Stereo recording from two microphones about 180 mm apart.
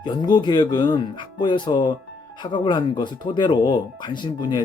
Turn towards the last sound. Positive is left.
turn(degrees=25)  # may be behind; listen again after turning